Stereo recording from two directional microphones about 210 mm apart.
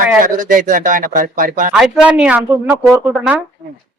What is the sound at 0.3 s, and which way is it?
Speech, 40° right (ahead or behind).